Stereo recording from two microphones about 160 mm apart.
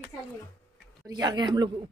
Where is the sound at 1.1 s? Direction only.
25° right (ahead or behind).